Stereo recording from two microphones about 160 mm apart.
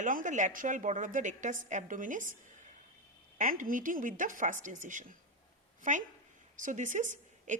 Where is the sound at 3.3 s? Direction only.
55° right (ahead or behind).